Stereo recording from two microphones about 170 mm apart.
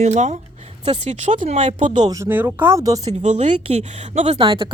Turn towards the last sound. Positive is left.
turn(degrees=-30)  # may be behind; listen again after turning